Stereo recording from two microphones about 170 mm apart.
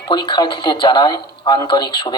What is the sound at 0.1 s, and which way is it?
A man's voice, 25° left (ahead or behind).